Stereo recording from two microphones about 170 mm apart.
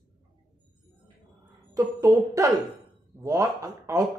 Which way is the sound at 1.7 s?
20° right (ahead or behind).